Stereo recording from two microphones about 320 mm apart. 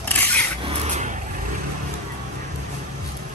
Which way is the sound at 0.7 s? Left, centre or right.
Centre.